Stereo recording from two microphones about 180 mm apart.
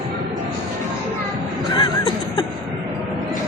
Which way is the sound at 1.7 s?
25° left (ahead or behind).